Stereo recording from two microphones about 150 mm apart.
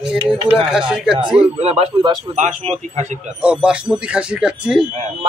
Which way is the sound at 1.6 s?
40° right (ahead or behind).